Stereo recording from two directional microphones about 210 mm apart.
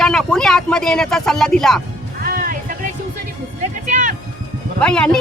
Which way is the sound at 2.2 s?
40° right (ahead or behind).